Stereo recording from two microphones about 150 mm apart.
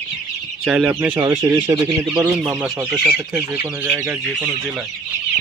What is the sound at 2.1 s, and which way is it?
Speech, 25° right (ahead or behind).